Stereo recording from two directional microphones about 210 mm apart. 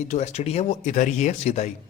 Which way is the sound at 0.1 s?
30° left (ahead or behind).